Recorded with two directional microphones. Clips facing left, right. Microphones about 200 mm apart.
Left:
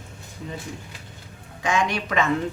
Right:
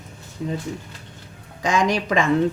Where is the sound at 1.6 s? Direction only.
35° right (ahead or behind).